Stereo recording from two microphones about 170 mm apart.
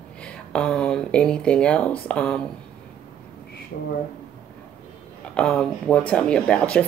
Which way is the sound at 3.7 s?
60° left (ahead or behind).